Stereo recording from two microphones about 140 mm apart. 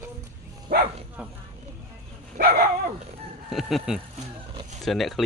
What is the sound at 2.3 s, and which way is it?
Dog, 90° right.